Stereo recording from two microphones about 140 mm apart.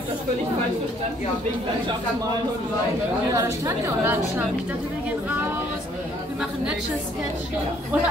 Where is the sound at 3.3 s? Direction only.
20° right (ahead or behind).